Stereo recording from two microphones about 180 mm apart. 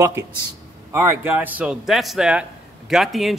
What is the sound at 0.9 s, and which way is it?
A man's voice, 15° right (ahead or behind).